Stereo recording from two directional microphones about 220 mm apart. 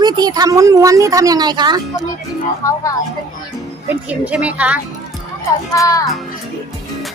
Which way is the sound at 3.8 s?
5° right (ahead or behind).